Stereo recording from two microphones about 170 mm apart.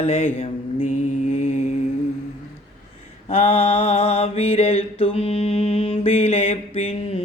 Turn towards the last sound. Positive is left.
turn(degrees=35)  # may be behind; listen again after turning